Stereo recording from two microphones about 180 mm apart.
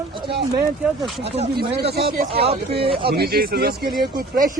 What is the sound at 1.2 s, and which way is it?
Speech, 35° right (ahead or behind).